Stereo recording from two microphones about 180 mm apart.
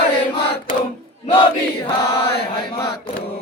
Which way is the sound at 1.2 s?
30° left (ahead or behind).